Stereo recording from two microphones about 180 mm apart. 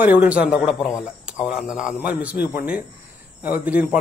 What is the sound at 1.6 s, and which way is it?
Speech, 5° right (ahead or behind).